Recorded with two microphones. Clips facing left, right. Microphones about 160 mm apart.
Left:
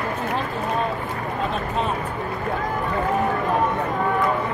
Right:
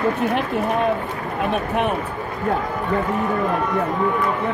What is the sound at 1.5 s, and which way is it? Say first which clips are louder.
Speech: right 6 dB; 65° right (ahead or behind).